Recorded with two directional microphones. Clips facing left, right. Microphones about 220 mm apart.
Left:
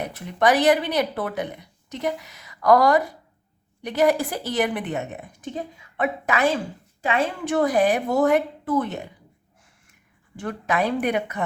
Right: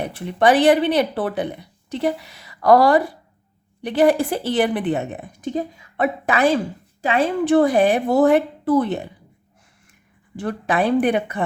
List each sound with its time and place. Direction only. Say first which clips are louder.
0.0 s speech: right 4 dB; 30° right (ahead or behind)
10.3 s speech: right 3 dB; 35° right (ahead or behind)